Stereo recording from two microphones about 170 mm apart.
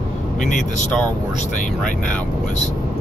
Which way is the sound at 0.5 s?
45° left (ahead or behind).